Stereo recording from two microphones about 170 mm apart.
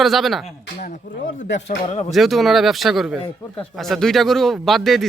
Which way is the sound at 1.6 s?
40° left (ahead or behind).